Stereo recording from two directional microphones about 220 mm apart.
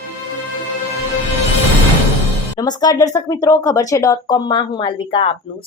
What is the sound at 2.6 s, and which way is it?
A woman's voice, 15° left (ahead or behind).